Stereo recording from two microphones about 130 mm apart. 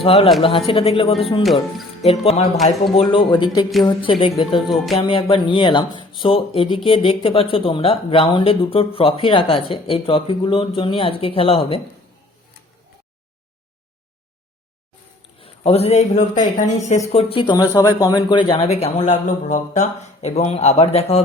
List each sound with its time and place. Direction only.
0.0 s speech: 45° left (ahead or behind)
15.4 s speech: 50° left (ahead or behind); by 17.0 s 70° left (ahead or behind)
17.1 s speech: 45° left (ahead or behind)
19.0 s speech: 70° left (ahead or behind); by 21.2 s 55° left (ahead or behind)